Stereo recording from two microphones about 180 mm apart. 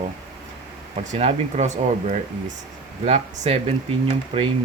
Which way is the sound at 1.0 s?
40° right (ahead or behind).